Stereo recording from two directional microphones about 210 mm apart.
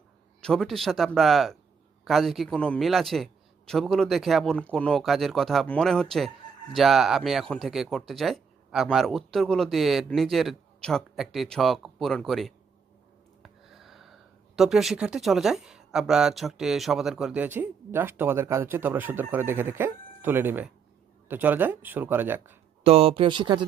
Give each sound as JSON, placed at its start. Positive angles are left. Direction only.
{"t": 0.4, "sound": "speech", "side_deg": 5}
{"t": 22.8, "sound": "speech", "side_deg": -30}